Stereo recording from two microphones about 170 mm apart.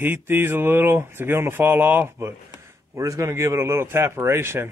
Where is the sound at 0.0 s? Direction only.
10° right (ahead or behind).